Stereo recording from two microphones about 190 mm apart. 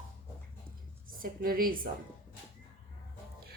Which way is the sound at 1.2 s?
50° right (ahead or behind).